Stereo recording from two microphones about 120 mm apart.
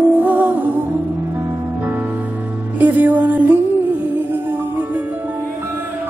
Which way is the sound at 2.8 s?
15° right (ahead or behind).